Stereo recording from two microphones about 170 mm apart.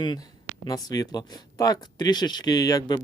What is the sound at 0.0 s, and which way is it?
Speech, 25° left (ahead or behind).